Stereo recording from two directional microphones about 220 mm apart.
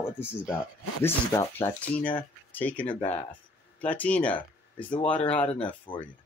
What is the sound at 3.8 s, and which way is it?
Speech, 5° left (ahead or behind).